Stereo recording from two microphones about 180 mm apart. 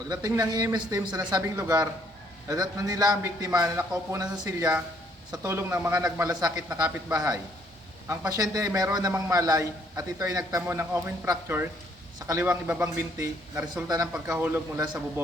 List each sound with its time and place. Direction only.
0.1 s a man's voice: 20° right (ahead or behind)